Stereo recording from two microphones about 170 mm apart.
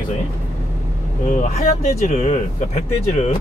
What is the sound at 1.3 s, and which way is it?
Speech, 50° left (ahead or behind).